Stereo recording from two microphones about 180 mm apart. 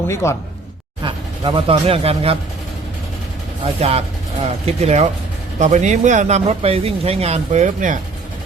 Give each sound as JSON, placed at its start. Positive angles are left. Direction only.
{"t": 0.1, "sound": "speech", "side_deg": 15}
{"t": 1.0, "sound": "speech", "side_deg": -30}
{"t": 3.8, "sound": "speech", "side_deg": -35}